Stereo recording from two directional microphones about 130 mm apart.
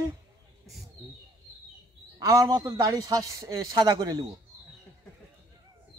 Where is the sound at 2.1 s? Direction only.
30° right (ahead or behind).